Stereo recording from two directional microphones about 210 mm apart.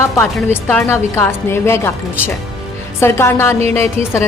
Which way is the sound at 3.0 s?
10° left (ahead or behind).